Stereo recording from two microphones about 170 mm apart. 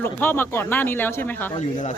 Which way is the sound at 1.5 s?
45° left (ahead or behind).